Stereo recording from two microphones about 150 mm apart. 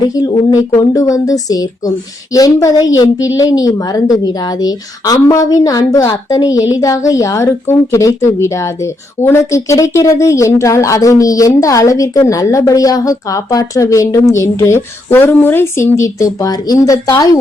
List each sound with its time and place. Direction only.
0.1 s speech: 25° left (ahead or behind)